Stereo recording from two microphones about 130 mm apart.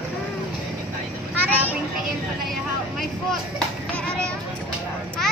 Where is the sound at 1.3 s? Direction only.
10° right (ahead or behind).